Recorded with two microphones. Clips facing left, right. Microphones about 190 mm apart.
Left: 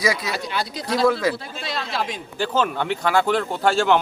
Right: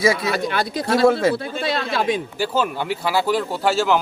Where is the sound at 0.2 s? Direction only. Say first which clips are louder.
Right 5 dB; 55° right (ahead or behind).